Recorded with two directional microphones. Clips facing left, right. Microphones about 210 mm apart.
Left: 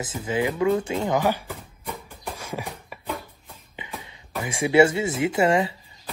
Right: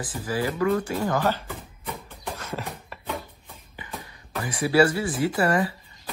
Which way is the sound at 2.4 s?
10° left (ahead or behind).